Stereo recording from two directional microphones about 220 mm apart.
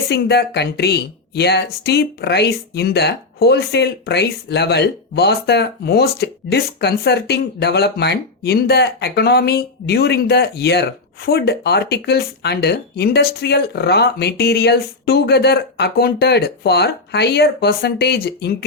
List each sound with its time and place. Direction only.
0.1 s speech: 50° left (ahead or behind)